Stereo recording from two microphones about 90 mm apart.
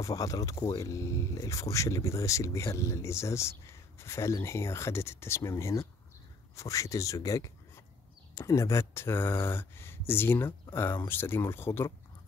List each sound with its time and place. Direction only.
0.0 s speech: 40° left (ahead or behind)